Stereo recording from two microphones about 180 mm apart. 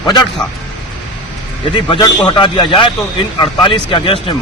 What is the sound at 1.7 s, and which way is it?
A man's voice, 25° left (ahead or behind).